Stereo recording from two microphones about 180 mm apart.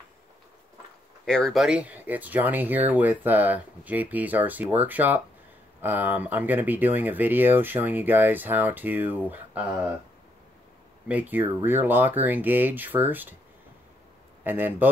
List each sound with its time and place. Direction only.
1.2 s speech: 5° left (ahead or behind)
11.1 s speech: 10° right (ahead or behind)
14.4 s speech: 10° right (ahead or behind)